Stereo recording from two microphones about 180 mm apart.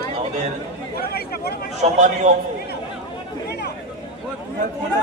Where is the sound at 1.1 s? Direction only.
60° left (ahead or behind).